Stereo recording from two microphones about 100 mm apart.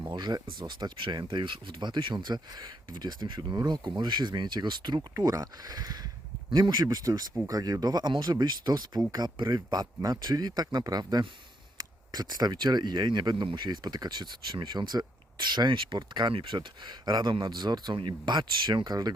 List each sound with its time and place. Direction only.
0.0 s speech: 45° right (ahead or behind)
5.1 s speech: 35° right (ahead or behind)